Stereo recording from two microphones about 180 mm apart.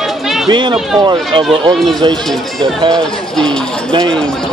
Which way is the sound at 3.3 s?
5° left (ahead or behind).